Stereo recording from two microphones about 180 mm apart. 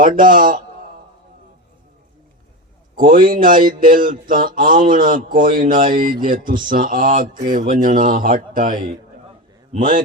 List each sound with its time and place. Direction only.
0.0 s speech: 50° right (ahead or behind)
3.0 s speech: 50° right (ahead or behind)